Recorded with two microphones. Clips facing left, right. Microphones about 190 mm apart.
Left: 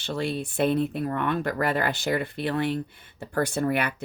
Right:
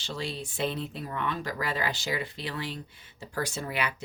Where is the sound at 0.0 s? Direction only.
55° left (ahead or behind).